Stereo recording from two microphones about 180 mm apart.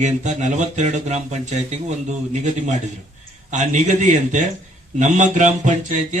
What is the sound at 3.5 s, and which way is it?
A man's voice, 40° right (ahead or behind).